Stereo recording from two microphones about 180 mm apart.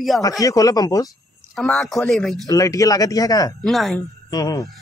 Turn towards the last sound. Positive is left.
turn(degrees=20)  # may be behind; listen again after turning